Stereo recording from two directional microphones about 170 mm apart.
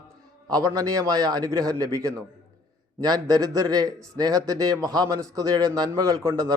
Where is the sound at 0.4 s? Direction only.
20° right (ahead or behind).